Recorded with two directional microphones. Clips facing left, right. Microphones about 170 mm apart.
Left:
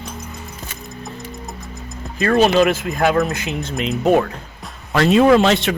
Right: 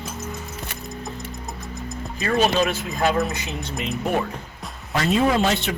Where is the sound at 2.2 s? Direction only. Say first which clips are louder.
Left 6 dB; 60° left (ahead or behind).